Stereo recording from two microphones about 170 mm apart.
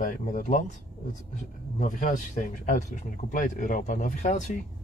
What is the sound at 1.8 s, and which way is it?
Speech, 50° left (ahead or behind).